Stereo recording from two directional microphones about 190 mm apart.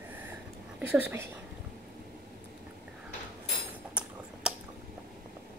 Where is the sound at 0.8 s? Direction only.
10° right (ahead or behind).